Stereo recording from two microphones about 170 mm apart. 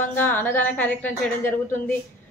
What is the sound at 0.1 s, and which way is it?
A woman's voice, 10° left (ahead or behind).